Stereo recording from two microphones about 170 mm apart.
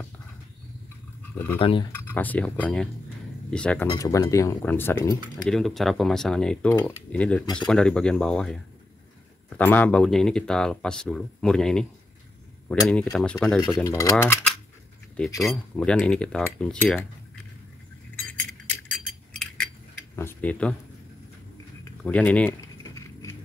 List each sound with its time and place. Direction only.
1.6 s speech: 30° left (ahead or behind)
2.0 s speech: 10° left (ahead or behind)
3.9 s speech: 20° left (ahead or behind)
5.4 s speech: centre (ahead or behind)
9.6 s speech: 10° left (ahead or behind)
13.8 s speech: 20° left (ahead or behind)
15.4 s speech: 5° left (ahead or behind)
18.7 s chink: 5° left (ahead or behind)
20.2 s speech: 10° left (ahead or behind)
21.8 s a sound: 5° left (ahead or behind)